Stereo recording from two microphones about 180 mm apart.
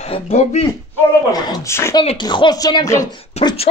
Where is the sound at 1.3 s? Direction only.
20° left (ahead or behind).